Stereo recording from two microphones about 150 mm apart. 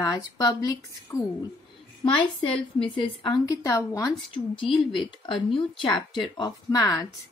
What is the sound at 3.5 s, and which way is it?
Speech, 20° left (ahead or behind).